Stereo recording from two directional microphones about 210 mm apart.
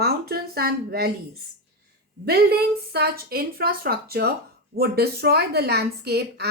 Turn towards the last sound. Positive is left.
turn(degrees=-50)  # may be behind; listen again after turning